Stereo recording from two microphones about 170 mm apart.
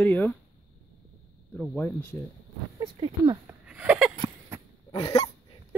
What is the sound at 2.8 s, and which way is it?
Speech, 30° right (ahead or behind).